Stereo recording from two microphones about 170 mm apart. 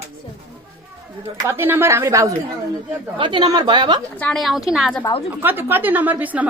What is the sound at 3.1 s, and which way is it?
Speech, 30° right (ahead or behind).